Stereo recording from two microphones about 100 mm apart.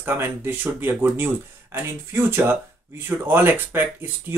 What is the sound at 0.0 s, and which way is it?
Speech, 25° right (ahead or behind).